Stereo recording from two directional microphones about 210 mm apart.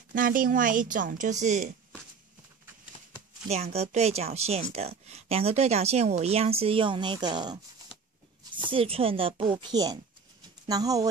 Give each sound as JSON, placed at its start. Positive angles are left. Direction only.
{"t": 0.1, "sound": "speech", "side_deg": -40}
{"t": 3.4, "sound": "speech", "side_deg": -30}